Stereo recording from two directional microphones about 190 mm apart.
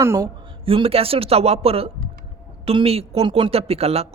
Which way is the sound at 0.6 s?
30° right (ahead or behind).